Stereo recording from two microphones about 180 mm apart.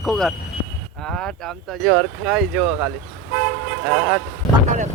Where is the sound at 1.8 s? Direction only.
5° right (ahead or behind).